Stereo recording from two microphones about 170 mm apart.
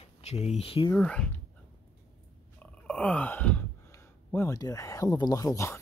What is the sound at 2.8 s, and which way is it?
Wail, 5° left (ahead or behind).